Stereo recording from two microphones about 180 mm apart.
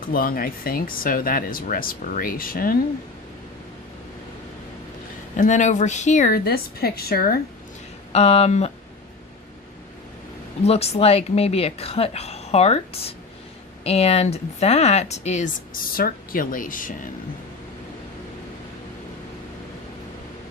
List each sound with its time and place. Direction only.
0.1 s speech: 55° left (ahead or behind)
5.4 s speech: 45° left (ahead or behind)
8.1 s speech: 35° left (ahead or behind)
10.6 s speech: 35° left (ahead or behind)